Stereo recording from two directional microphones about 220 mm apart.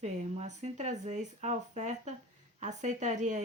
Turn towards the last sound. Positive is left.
turn(degrees=-35)  # may be behind; listen again after turning